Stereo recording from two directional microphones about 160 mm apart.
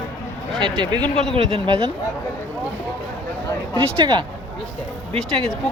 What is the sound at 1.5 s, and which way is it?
Speech, 35° right (ahead or behind).